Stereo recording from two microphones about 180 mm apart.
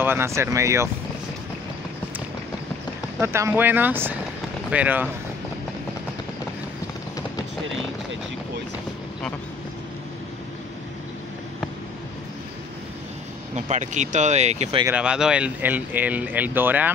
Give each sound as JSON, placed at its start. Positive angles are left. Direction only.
{"t": 0.0, "sound": "speech", "side_deg": -15}
{"t": 3.2, "sound": "speech", "side_deg": -15}
{"t": 13.6, "sound": "speech", "side_deg": -40}
{"t": 14.9, "sound": "speech", "side_deg": -5}